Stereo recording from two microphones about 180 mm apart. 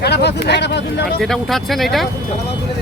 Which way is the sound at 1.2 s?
Centre (ahead or behind).